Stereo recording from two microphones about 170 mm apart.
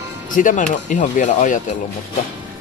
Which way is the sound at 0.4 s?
50° left (ahead or behind).